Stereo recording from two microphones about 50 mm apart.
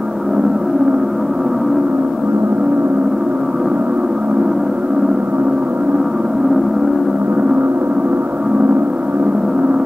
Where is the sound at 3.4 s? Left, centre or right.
Centre.